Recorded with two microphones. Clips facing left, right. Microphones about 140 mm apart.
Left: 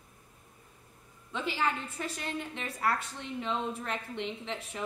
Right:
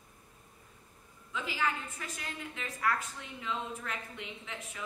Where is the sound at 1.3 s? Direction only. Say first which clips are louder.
Left 3 dB; 30° left (ahead or behind).